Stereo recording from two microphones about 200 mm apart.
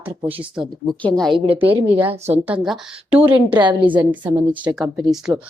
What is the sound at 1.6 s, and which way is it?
Speech, 25° right (ahead or behind).